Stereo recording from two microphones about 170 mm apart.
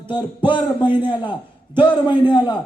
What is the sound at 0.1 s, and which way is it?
Speech, 25° left (ahead or behind).